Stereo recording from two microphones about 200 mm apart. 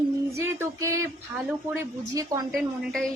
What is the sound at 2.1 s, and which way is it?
Speech, 15° right (ahead or behind).